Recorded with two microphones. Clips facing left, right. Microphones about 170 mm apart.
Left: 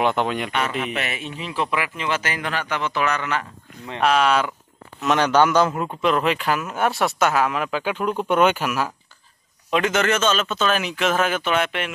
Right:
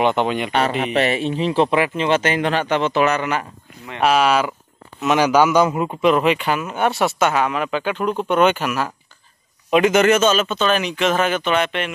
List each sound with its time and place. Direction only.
0.0 s a man's voice: centre (ahead or behind)
0.5 s a man's voice: 35° right (ahead or behind); by 8.9 s 5° left (ahead or behind)
9.7 s a man's voice: 15° right (ahead or behind); by 11.9 s 5° left (ahead or behind)